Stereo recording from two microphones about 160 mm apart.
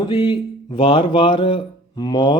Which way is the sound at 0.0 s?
30° left (ahead or behind).